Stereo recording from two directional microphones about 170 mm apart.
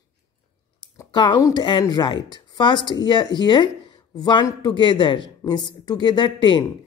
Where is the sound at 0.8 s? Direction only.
25° left (ahead or behind).